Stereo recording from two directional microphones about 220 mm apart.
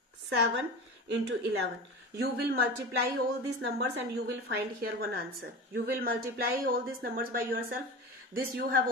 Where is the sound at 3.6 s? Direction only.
50° right (ahead or behind).